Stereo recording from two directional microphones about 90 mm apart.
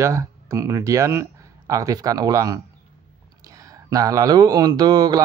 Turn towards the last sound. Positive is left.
turn(degrees=-50)  # may be behind; listen again after turning